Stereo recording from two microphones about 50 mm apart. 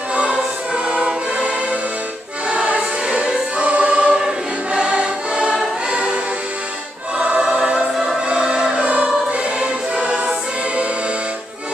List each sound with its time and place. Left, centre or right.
0.1 s music: right
2.5 s choir: right
4.7 s music: right
7.2 s choir: right
8.3 s a sound: centre
8.8 s choir: right